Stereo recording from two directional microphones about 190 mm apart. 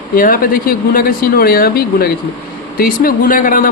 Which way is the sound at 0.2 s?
50° left (ahead or behind).